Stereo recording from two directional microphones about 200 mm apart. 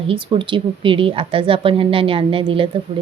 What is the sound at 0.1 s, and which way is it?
A woman's voice, 25° right (ahead or behind).